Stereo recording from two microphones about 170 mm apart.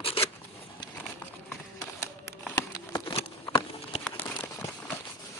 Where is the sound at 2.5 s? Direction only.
20° left (ahead or behind).